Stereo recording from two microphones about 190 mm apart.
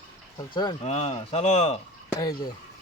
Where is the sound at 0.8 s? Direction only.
35° left (ahead or behind).